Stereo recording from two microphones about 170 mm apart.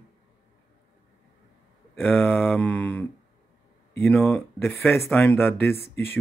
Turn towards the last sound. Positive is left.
turn(degrees=10)  # may be behind; listen again after turning